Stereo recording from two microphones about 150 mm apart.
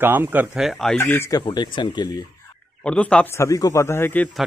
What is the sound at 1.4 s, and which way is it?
Speech, 30° left (ahead or behind).